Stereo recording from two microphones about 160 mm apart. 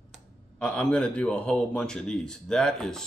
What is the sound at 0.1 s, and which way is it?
Speech, 5° left (ahead or behind).